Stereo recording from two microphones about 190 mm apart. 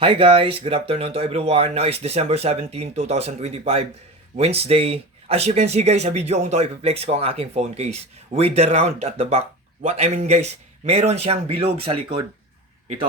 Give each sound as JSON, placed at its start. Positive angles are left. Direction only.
{"t": 0.0, "sound": "speech", "side_deg": -30}